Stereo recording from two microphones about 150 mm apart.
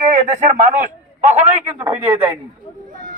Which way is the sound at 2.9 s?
65° right (ahead or behind).